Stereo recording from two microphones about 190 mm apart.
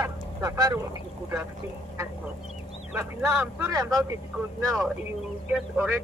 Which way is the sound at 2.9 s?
10° right (ahead or behind).